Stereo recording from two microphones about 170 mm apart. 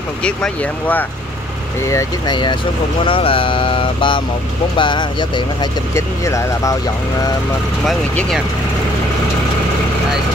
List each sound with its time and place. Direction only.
0.2 s speech: 5° left (ahead or behind)
1.9 s speech: 20° left (ahead or behind)
3.1 s mantra: 30° left (ahead or behind)
4.7 s speech: 30° left (ahead or behind)
7.8 s speech: centre (ahead or behind)